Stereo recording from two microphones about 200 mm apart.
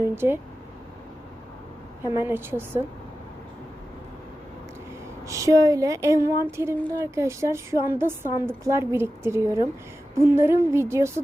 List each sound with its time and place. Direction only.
0.0 s a woman's voice: 10° right (ahead or behind)
2.0 s a woman's voice: 10° right (ahead or behind)
5.2 s a woman's voice: 15° right (ahead or behind)